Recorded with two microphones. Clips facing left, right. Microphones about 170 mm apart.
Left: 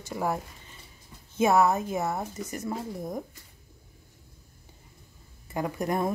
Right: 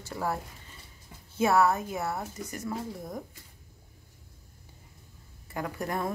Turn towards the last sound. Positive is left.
turn(degrees=20)  # may be behind; listen again after turning